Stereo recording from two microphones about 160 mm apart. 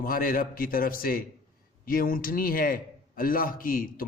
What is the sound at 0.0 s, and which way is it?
A man's voice, 65° left (ahead or behind).